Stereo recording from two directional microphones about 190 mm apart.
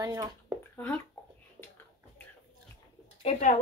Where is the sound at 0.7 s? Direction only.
10° left (ahead or behind).